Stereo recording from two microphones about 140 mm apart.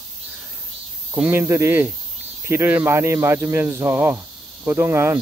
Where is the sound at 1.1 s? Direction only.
15° right (ahead or behind).